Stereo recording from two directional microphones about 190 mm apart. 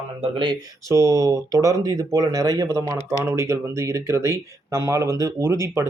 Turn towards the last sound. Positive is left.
turn(degrees=-15)  # may be behind; listen again after turning